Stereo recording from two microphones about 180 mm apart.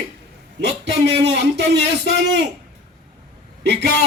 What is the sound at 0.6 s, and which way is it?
A man's voice, 70° right (ahead or behind).